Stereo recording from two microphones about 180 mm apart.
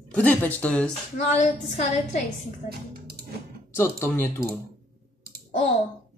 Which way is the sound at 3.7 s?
15° left (ahead or behind).